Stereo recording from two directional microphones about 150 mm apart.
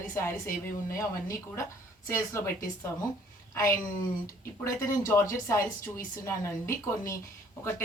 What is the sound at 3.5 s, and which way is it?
A woman's voice, 20° left (ahead or behind).